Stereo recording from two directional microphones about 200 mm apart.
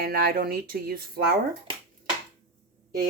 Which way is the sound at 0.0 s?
50° right (ahead or behind).